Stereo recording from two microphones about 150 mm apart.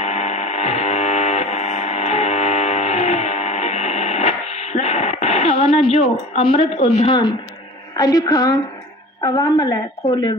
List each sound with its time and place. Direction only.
0.0 s buzzer: 50° left (ahead or behind)
7.9 s speech: 25° left (ahead or behind)